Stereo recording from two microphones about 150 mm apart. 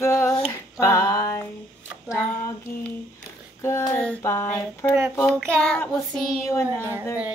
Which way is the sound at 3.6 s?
20° left (ahead or behind).